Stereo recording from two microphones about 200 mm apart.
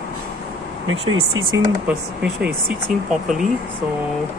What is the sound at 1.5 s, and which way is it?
Speech, 15° right (ahead or behind).